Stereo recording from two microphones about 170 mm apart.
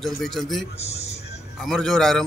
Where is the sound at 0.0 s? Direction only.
Centre (ahead or behind).